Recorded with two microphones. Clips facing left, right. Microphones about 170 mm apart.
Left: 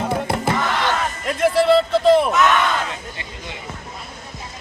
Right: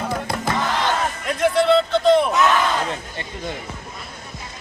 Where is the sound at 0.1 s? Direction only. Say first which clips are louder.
Left 3 dB; 25° left (ahead or behind).